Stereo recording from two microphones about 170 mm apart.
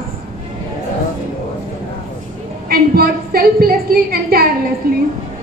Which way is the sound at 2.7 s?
60° right (ahead or behind).